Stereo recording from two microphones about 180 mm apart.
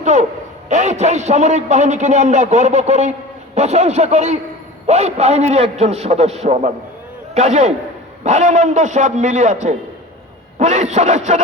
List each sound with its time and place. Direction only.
0.0 s a man's voice: 40° right (ahead or behind)